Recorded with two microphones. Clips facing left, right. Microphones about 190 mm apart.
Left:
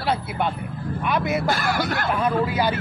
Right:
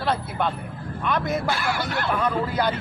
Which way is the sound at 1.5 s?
45° left (ahead or behind).